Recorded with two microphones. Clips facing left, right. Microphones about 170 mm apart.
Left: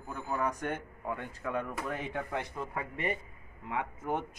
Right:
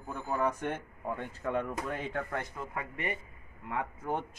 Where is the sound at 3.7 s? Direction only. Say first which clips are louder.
Even; 20° left (ahead or behind).